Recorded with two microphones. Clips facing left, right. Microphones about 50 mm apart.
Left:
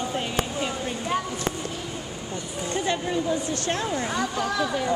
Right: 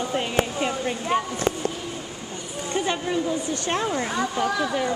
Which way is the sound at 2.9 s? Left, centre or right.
Centre.